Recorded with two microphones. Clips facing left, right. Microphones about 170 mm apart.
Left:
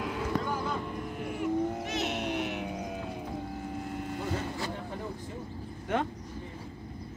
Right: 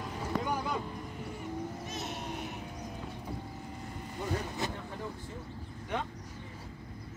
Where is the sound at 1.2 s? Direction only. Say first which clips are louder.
Left 10 dB; 80° left.